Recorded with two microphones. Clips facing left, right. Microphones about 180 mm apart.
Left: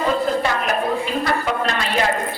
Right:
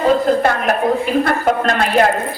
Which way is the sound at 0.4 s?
55° right (ahead or behind).